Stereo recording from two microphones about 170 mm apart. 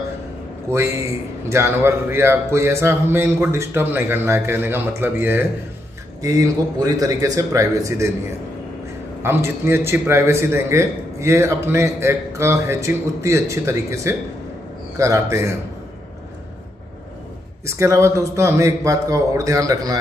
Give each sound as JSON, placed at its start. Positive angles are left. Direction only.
{"t": 0.7, "sound": "a man's voice", "side_deg": -15}
{"t": 9.2, "sound": "a man's voice", "side_deg": -15}
{"t": 17.6, "sound": "a man's voice", "side_deg": -15}